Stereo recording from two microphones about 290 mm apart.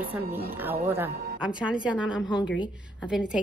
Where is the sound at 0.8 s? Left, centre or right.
Centre.